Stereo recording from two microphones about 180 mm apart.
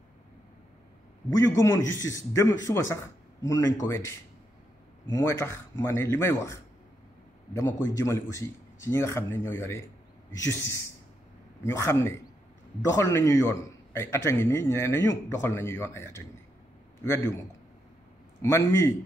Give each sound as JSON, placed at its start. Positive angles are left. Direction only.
{"t": 1.3, "sound": "a man's voice", "side_deg": 20}
{"t": 7.5, "sound": "a man's voice", "side_deg": 20}
{"t": 11.6, "sound": "a man's voice", "side_deg": 15}